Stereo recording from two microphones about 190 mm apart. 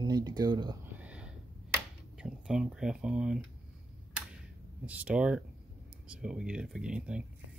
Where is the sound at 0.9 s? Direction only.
5° right (ahead or behind).